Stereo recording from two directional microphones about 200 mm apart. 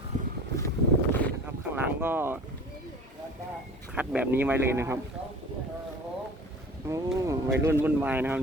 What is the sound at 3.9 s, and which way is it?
Speech, 5° right (ahead or behind).